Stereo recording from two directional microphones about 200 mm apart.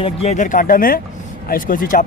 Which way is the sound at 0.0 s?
35° left (ahead or behind).